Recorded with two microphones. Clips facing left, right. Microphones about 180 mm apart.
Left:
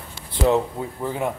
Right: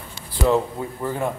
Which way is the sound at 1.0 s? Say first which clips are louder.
Right 1 dB; 15° left (ahead or behind).